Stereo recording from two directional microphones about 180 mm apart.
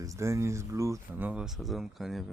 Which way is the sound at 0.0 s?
15° right (ahead or behind).